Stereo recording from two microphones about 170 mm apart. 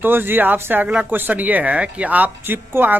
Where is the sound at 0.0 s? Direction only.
10° right (ahead or behind).